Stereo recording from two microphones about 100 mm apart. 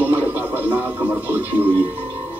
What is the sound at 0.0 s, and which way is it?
Television, 20° right (ahead or behind).